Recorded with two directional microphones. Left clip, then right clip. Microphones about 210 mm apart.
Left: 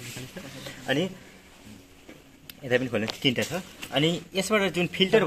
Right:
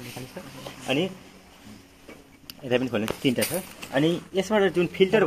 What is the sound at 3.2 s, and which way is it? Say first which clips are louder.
Speech: even; 45° left (ahead or behind).